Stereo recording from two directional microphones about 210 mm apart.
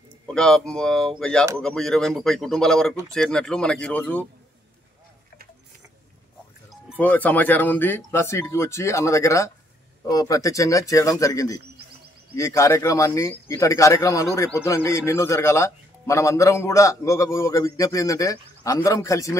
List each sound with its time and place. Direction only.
0.3 s speech: 5° left (ahead or behind)
7.0 s speech: 10° left (ahead or behind)